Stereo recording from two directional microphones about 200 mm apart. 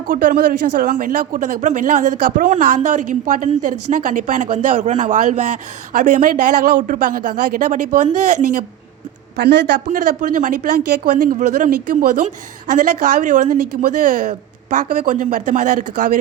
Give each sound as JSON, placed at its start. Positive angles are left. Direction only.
{"t": 0.1, "sound": "speech", "side_deg": -40}
{"t": 9.3, "sound": "speech", "side_deg": -60}
{"t": 9.9, "sound": "speech", "side_deg": -40}